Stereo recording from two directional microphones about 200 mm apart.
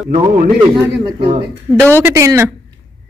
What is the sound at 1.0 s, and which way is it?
Speech, 25° right (ahead or behind).